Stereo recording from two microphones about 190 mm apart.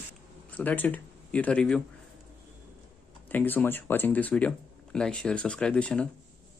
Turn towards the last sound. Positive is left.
turn(degrees=5)  # may be behind; listen again after turning